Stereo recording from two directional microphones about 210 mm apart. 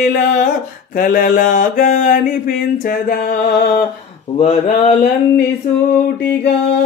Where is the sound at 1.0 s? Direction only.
45° left (ahead or behind).